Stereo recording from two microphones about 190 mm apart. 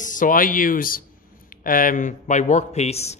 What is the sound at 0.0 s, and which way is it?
A man's voice, 45° left (ahead or behind).